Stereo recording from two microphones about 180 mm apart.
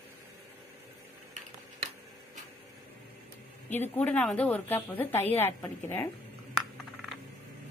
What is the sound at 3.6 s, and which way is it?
A woman's voice, 10° left (ahead or behind).